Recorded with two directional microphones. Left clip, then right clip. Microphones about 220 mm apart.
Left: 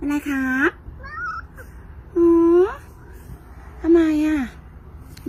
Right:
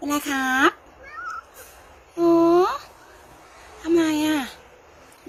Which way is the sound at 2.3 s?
10° right (ahead or behind).